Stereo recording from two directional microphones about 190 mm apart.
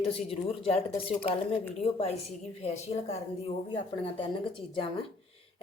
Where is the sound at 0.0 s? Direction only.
30° left (ahead or behind).